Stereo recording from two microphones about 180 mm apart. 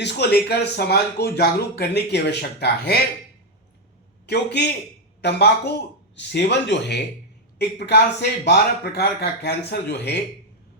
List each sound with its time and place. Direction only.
0.0 s speech: 65° left (ahead or behind)
4.3 s speech: 70° left (ahead or behind)